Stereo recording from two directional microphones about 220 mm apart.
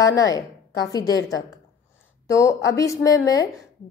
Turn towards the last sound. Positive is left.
turn(degrees=15)  # may be behind; listen again after turning